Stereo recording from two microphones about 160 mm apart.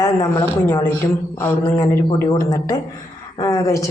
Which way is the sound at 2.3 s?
20° left (ahead or behind).